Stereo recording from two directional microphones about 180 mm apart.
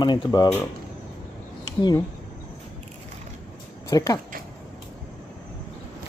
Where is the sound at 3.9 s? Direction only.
20° left (ahead or behind).